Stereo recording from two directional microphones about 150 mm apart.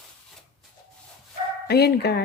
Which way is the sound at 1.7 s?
90° left.